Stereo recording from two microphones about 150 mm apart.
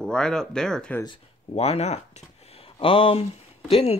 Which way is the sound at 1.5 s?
45° left (ahead or behind).